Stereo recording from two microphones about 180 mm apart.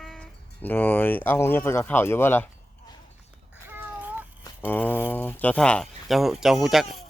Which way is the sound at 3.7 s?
10° right (ahead or behind).